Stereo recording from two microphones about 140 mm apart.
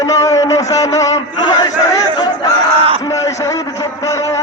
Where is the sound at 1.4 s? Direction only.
30° left (ahead or behind).